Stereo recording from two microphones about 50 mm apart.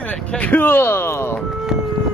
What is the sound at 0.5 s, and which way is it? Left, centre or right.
Speech, left.